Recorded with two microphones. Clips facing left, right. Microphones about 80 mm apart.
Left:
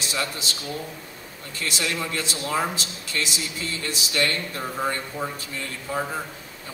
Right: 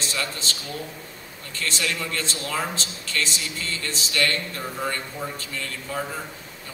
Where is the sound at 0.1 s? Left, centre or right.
Centre.